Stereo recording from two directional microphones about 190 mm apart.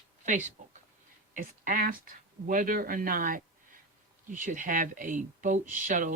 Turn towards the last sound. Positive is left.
turn(degrees=-45)  # may be behind; listen again after turning